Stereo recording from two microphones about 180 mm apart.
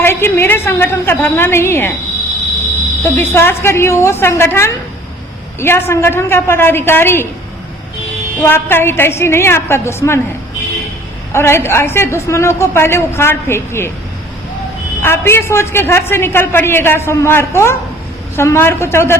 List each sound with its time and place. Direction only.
0.0 s a man's voice: 15° left (ahead or behind)
3.0 s a man's voice: 15° left (ahead or behind)
8.4 s a man's voice: 15° left (ahead or behind)
11.3 s a man's voice: 15° left (ahead or behind)
15.0 s a man's voice: 15° left (ahead or behind)